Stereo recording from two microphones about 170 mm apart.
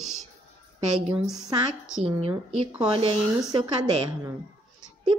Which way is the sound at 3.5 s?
25° right (ahead or behind).